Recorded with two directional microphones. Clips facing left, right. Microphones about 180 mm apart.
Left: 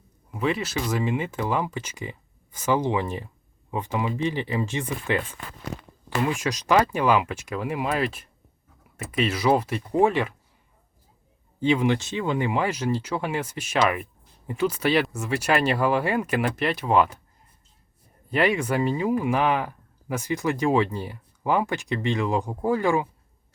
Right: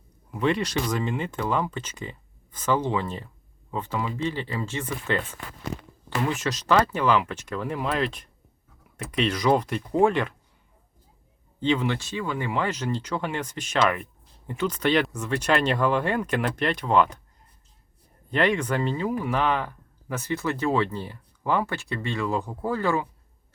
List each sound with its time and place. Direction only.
0.3 s speech: 5° left (ahead or behind)
6.2 s speech: 10° left (ahead or behind)
11.6 s speech: 10° left (ahead or behind)
18.3 s speech: 10° left (ahead or behind)